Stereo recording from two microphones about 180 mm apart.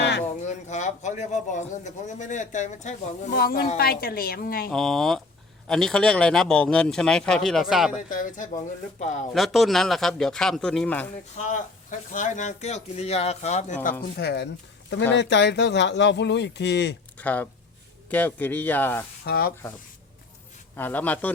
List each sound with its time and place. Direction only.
0.0 s a sound: 70° left (ahead or behind)
0.4 s speech: 40° left (ahead or behind)
3.3 s a woman's voice: 55° left (ahead or behind)
4.7 s a man's voice: centre (ahead or behind)
8.1 s speech: 50° left (ahead or behind)
9.3 s a man's voice: centre (ahead or behind)
11.3 s speech: 45° left (ahead or behind)
14.2 s speech: 65° left (ahead or behind)
17.2 s speech: 10° left (ahead or behind)
19.2 s a woman's voice: 60° left (ahead or behind)
20.7 s speech: 10° left (ahead or behind)